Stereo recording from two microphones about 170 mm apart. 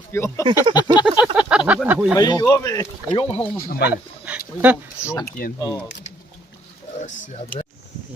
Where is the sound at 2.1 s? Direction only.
20° left (ahead or behind).